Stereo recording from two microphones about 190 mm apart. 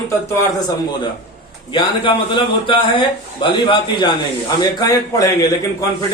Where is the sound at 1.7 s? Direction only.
25° left (ahead or behind).